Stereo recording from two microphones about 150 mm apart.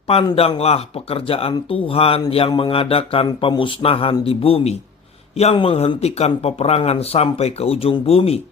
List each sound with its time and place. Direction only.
0.3 s speech: 40° left (ahead or behind)